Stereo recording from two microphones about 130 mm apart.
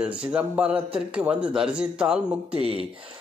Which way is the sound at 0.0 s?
10° right (ahead or behind).